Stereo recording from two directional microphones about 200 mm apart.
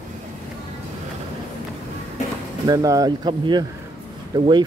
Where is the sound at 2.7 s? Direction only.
20° right (ahead or behind).